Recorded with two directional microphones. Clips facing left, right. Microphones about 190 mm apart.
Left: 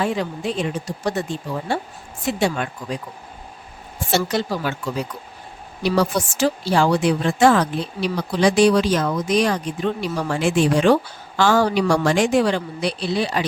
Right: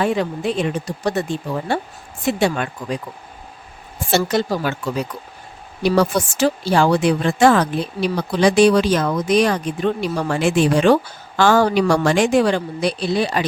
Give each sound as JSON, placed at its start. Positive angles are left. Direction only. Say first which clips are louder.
{"t": 0.0, "sound": "a woman's voice", "louder": "right 3 dB", "side_deg": -60}
{"t": 4.1, "sound": "a woman's voice", "louder": "right 3 dB", "side_deg": -50}
{"t": 5.8, "sound": "a woman's voice", "louder": "right 3 dB", "side_deg": -50}
{"t": 11.3, "sound": "a woman's voice", "louder": "right 2 dB", "side_deg": -55}